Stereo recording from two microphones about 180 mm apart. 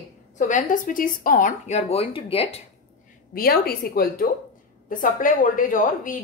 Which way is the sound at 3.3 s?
55° left (ahead or behind).